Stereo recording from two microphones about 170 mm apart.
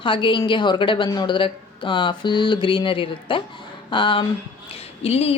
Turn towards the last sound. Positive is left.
turn(degrees=35)  # may be behind; listen again after turning